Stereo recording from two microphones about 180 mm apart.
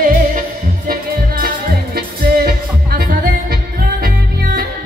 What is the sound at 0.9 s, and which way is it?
Music, 55° right (ahead or behind).